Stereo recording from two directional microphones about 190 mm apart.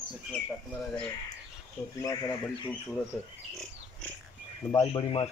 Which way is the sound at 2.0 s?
20° left (ahead or behind).